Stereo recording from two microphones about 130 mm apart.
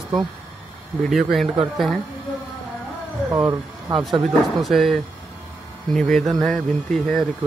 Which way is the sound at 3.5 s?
30° right (ahead or behind).